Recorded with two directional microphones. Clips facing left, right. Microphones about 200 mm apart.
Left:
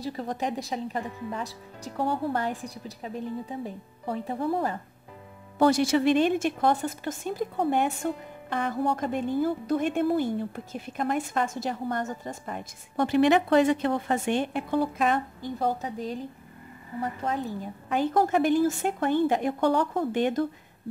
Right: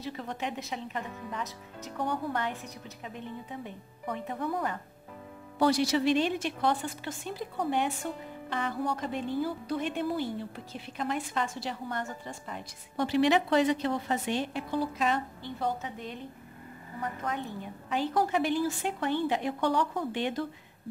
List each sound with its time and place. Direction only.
0.0 s a woman's voice: 35° left (ahead or behind)
5.6 s a woman's voice: 50° left (ahead or behind); by 17.6 s 35° left (ahead or behind)
17.8 s a woman's voice: 50° left (ahead or behind)